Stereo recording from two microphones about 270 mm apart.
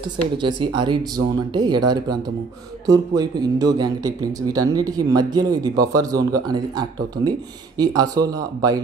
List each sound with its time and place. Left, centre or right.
0.0 s speech: centre